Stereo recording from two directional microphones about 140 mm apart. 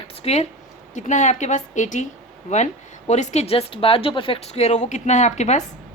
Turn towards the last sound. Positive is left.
turn(degrees=55)  # may be behind; listen again after turning